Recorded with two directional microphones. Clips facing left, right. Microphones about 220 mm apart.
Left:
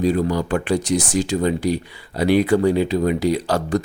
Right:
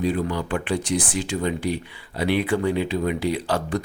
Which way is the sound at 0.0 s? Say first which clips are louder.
Left 5 dB; 40° left (ahead or behind).